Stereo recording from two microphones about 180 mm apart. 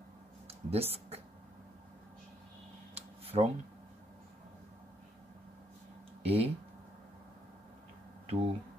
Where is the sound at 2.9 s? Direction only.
35° right (ahead or behind).